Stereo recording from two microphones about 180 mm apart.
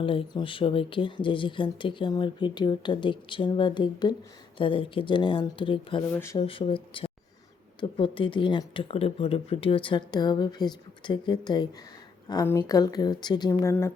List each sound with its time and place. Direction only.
0.0 s speech: 30° left (ahead or behind)